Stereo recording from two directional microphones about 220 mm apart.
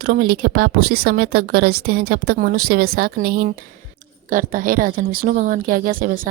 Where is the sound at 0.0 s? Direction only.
45° right (ahead or behind).